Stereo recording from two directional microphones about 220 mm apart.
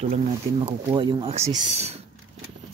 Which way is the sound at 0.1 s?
25° right (ahead or behind).